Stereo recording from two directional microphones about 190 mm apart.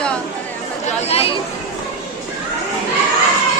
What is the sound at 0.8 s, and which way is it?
Speech, 30° left (ahead or behind).